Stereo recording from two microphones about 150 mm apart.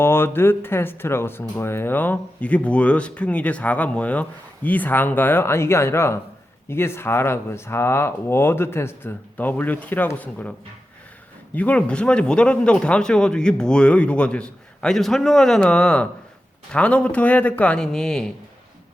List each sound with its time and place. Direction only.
0.0 s speech: 15° left (ahead or behind)
11.5 s speech: 10° left (ahead or behind)